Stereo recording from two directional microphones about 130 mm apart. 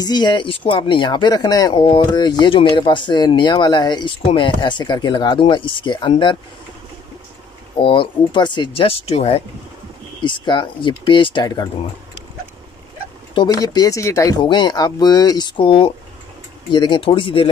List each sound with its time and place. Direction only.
0.0 s speech: 35° left (ahead or behind)
7.8 s speech: 40° left (ahead or behind)
10.2 s speech: 35° left (ahead or behind)
13.3 s speech: 35° left (ahead or behind)
14.4 s speech: 35° left (ahead or behind)